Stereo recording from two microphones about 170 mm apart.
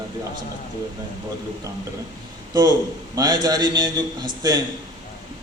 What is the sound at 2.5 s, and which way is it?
A man's voice, 25° right (ahead or behind).